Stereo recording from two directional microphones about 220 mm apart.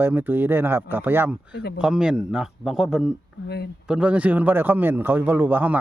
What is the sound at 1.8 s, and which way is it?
A man's voice, 5° right (ahead or behind).